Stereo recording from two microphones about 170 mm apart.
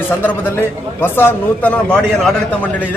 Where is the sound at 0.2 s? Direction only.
10° left (ahead or behind).